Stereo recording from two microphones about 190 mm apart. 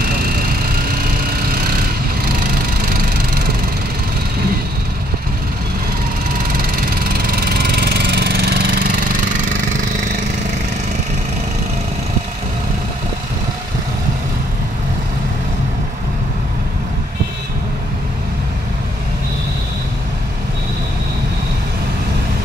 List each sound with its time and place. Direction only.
0.0 s vehicle: 50° right (ahead or behind)
7.2 s engine: 50° right (ahead or behind)